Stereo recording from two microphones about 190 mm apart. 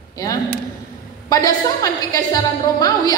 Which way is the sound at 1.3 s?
20° left (ahead or behind).